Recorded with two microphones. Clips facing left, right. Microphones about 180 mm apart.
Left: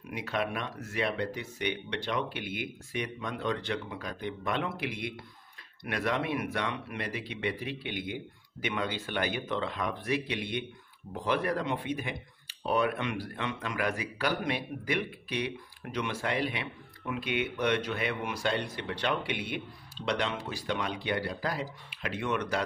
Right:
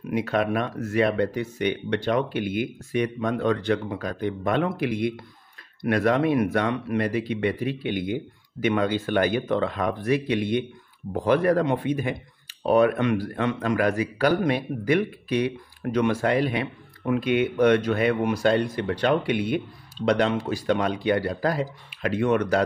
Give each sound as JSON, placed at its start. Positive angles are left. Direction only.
{"t": 0.1, "sound": "speech", "side_deg": -50}